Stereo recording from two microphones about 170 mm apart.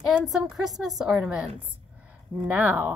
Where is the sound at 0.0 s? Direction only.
Centre (ahead or behind).